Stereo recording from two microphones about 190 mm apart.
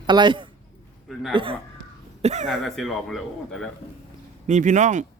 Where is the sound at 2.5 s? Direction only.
Centre (ahead or behind).